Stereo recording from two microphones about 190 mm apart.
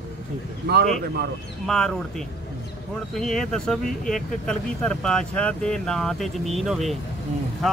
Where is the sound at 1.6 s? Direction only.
5° left (ahead or behind).